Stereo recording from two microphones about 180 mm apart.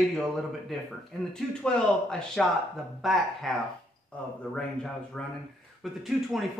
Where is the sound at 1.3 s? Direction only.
5° left (ahead or behind).